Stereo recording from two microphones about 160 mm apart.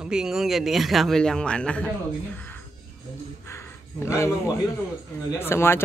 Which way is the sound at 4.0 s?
20° left (ahead or behind).